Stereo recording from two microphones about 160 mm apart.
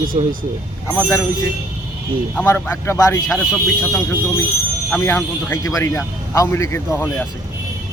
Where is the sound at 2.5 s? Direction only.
15° left (ahead or behind).